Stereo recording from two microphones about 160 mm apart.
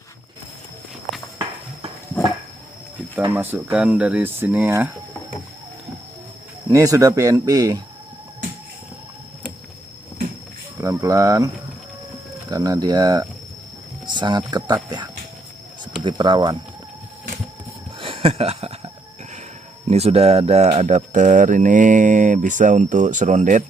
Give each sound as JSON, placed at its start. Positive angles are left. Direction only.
{"t": 3.3, "sound": "speech", "side_deg": -10}
{"t": 6.7, "sound": "speech", "side_deg": -20}
{"t": 10.8, "sound": "speech", "side_deg": -20}
{"t": 18.0, "sound": "a sound", "side_deg": -35}
{"t": 19.9, "sound": "speech", "side_deg": -40}